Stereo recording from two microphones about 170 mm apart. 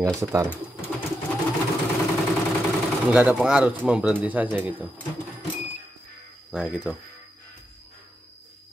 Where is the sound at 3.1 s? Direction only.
5° right (ahead or behind).